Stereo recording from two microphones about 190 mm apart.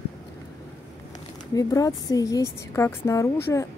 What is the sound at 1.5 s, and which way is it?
Speech, 20° left (ahead or behind).